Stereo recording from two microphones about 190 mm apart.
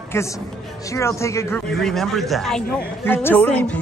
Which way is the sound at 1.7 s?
Centre (ahead or behind).